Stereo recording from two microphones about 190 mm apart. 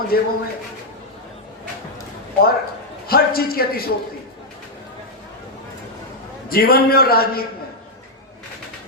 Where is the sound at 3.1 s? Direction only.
50° left (ahead or behind).